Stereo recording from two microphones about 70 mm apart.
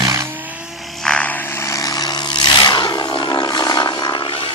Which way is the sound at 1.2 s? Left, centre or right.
Left.